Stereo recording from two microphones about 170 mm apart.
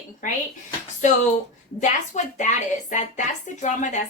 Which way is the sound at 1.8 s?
45° left (ahead or behind).